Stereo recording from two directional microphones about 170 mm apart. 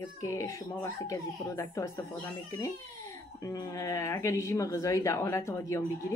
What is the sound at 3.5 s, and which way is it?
Speech, 20° left (ahead or behind).